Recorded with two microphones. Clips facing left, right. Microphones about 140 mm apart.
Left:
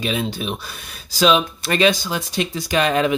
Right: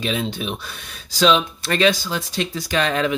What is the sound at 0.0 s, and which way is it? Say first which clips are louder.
Speech: left 1 dB; 5° left (ahead or behind).